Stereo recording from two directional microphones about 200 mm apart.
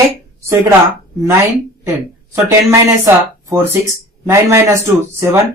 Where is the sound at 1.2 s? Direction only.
15° right (ahead or behind).